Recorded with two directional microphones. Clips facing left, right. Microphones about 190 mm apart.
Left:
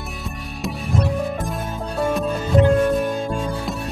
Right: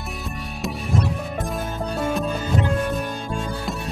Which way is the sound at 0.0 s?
Centre (ahead or behind).